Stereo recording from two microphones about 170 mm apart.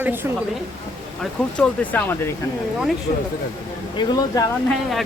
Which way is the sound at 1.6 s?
10° left (ahead or behind).